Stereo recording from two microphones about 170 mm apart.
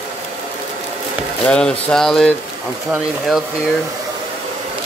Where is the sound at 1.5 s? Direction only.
5° left (ahead or behind).